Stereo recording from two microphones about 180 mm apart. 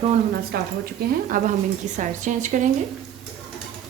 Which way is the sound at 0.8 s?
55° right (ahead or behind).